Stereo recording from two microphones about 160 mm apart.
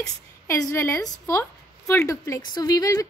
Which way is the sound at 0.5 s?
15° left (ahead or behind).